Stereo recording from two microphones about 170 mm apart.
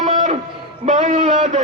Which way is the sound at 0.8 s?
45° right (ahead or behind).